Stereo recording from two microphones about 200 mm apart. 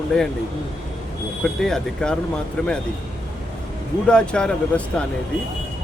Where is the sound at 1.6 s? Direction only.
5° left (ahead or behind).